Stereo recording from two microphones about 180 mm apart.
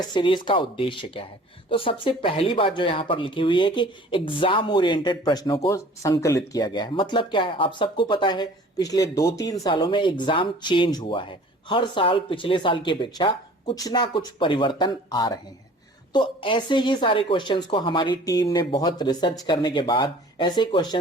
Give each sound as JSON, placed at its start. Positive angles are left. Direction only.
{"t": 0.0, "sound": "speech", "side_deg": 25}